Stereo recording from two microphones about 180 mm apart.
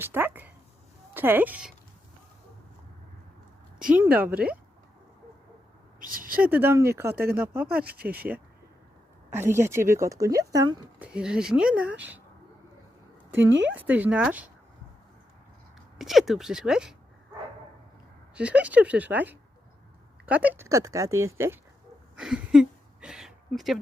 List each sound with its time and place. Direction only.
0.0 s a sound: 10° right (ahead or behind)
1.1 s a woman's voice: 10° right (ahead or behind)
3.9 s a woman's voice: 10° right (ahead or behind)
6.0 s a sound: 50° right (ahead or behind)
6.5 s a woman's voice: 10° right (ahead or behind)
7.1 s speech: 60° right (ahead or behind)
7.3 s a woman's voice: 10° right (ahead or behind)
11.0 s a woman's voice: 5° right (ahead or behind)
13.5 s speech: 90° right
13.7 s a woman's voice: 10° right (ahead or behind)
16.0 s speech: centre (ahead or behind)
18.3 s a woman's voice: 5° right (ahead or behind)
22.1 s a sound: 5° right (ahead or behind)